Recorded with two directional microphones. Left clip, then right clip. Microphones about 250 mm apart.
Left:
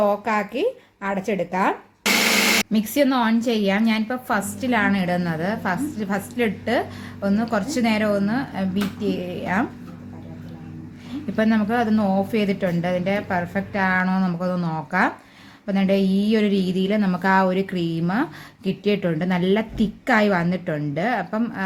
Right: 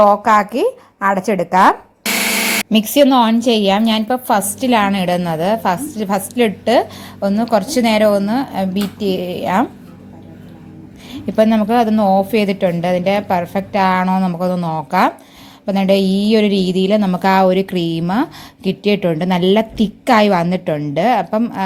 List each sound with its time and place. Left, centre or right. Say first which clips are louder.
0.0 s a woman's voice: right 10 dB; right
2.7 s a woman's voice: right 9 dB; right
11.1 s a woman's voice: right 8 dB; centre